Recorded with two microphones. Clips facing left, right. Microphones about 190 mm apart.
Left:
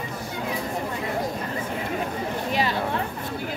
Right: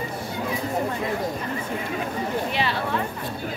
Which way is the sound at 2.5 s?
40° left (ahead or behind).